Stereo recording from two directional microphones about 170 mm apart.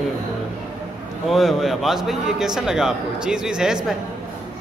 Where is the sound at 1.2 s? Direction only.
Centre (ahead or behind).